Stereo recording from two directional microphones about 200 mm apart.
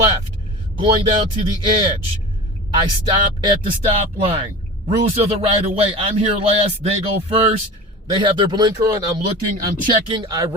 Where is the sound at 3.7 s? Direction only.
30° right (ahead or behind).